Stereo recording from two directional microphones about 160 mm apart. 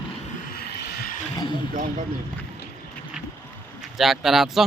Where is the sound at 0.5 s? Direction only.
85° left.